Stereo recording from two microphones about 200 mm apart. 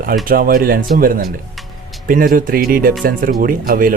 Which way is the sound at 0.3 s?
45° right (ahead or behind).